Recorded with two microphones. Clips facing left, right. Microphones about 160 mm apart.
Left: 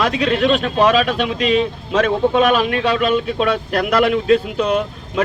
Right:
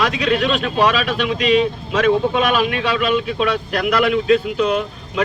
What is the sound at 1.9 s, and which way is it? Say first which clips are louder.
A man's voice: left 1 dB; 35° left (ahead or behind).